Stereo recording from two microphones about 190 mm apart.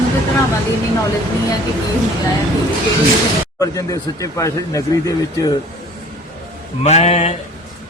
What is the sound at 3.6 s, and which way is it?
Speech, 20° left (ahead or behind).